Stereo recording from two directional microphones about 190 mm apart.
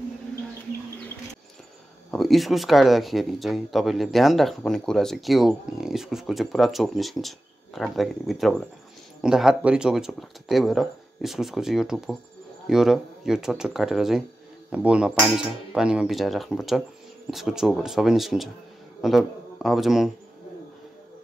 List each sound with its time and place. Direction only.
2.0 s a man's voice: centre (ahead or behind)